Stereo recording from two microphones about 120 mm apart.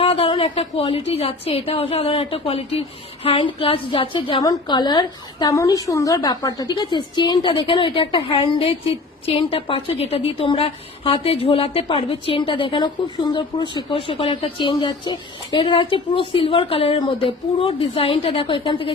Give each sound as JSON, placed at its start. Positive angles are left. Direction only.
{"t": 0.0, "sound": "a woman's voice", "side_deg": 50}
{"t": 4.4, "sound": "a woman's voice", "side_deg": 35}